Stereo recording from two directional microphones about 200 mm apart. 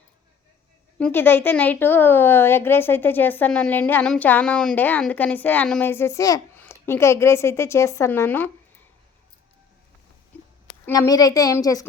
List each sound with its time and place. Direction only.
0.9 s a woman's voice: 10° left (ahead or behind)
10.8 s a woman's voice: 15° left (ahead or behind)